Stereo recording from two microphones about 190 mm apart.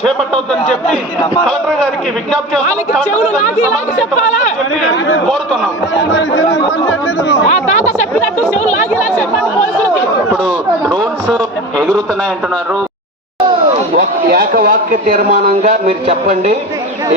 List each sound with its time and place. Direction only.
3.1 s speech: 35° left (ahead or behind)
4.9 s a man's voice: 90° left
6.1 s speech: 80° left
7.4 s speech: 35° left (ahead or behind)
10.4 s a sound: 5° left (ahead or behind)
13.9 s a man's voice: 50° right (ahead or behind)
16.0 s speech: 35° right (ahead or behind)